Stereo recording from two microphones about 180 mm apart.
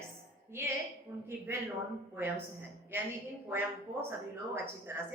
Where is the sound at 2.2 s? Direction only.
10° right (ahead or behind).